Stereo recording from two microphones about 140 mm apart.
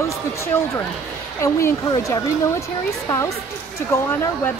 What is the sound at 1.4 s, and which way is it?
Speech, 20° left (ahead or behind).